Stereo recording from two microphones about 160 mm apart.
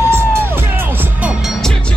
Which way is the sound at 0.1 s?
15° right (ahead or behind).